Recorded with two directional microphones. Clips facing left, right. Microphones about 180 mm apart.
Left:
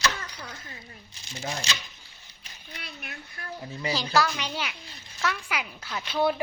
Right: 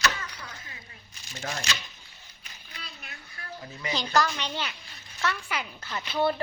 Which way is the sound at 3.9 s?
5° left (ahead or behind).